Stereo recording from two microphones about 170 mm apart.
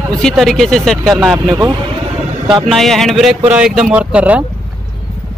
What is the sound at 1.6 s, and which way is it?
Speech, 25° right (ahead or behind).